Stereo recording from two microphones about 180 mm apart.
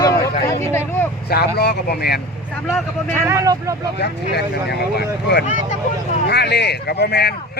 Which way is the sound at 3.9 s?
65° left (ahead or behind).